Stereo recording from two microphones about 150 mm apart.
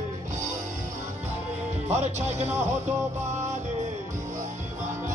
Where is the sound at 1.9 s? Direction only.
50° right (ahead or behind).